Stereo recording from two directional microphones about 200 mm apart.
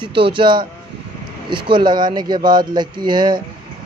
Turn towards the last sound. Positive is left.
turn(degrees=-25)  # may be behind; listen again after turning